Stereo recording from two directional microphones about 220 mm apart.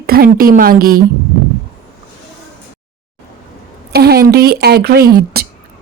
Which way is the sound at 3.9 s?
45° right (ahead or behind).